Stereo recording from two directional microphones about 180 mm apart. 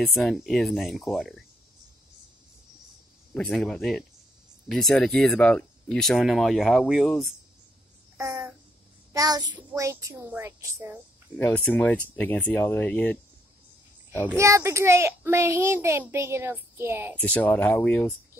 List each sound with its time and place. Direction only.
0.0 s speech: centre (ahead or behind)
3.3 s speech: centre (ahead or behind)
8.2 s a sound: 15° right (ahead or behind)
9.1 s a child's voice: 20° right (ahead or behind)
11.3 s speech: 10° left (ahead or behind)
14.2 s a child's voice: 15° right (ahead or behind)
17.2 s speech: 10° left (ahead or behind)